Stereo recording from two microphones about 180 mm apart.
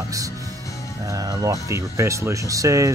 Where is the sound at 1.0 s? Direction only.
20° right (ahead or behind).